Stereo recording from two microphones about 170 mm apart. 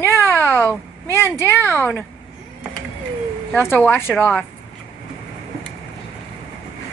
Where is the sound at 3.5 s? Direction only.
10° left (ahead or behind).